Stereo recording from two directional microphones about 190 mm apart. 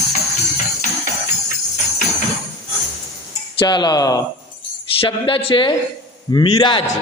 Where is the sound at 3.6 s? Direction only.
25° left (ahead or behind).